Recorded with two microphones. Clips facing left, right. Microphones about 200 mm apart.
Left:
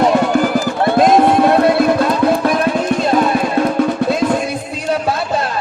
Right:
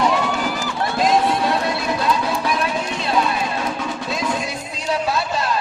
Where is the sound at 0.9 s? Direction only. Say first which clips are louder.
Left 7 dB; 55° left (ahead or behind).